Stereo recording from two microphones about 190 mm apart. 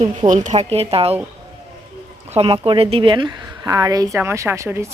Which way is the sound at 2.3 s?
30° right (ahead or behind).